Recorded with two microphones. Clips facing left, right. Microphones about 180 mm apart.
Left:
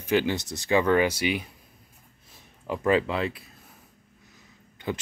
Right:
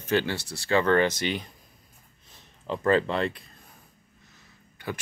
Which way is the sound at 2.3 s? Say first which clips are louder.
Even; 10° left (ahead or behind).